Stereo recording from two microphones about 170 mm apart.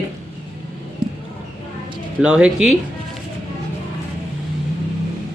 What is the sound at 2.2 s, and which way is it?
Speech, 5° right (ahead or behind).